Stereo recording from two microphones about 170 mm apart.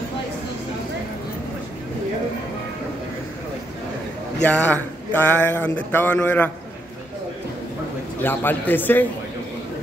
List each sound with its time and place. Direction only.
4.5 s a man's voice: 5° left (ahead or behind)
8.2 s a man's voice: 10° left (ahead or behind)